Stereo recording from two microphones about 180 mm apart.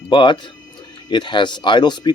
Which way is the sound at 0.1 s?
25° left (ahead or behind).